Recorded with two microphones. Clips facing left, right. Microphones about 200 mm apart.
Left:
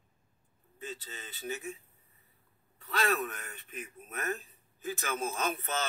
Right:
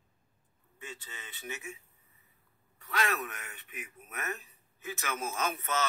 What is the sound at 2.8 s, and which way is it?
A man's voice, 35° left (ahead or behind).